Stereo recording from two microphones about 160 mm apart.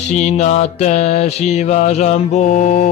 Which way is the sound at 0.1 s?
45° left (ahead or behind).